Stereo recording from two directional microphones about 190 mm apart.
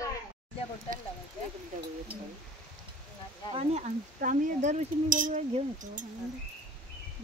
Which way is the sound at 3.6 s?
35° right (ahead or behind).